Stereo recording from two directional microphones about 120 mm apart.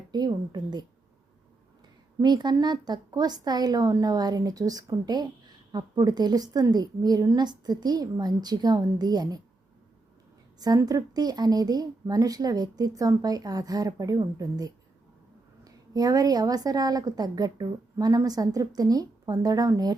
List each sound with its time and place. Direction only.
0.1 s a woman's voice: 35° right (ahead or behind)
2.2 s a woman's voice: 35° right (ahead or behind)
10.6 s a woman's voice: 30° right (ahead or behind)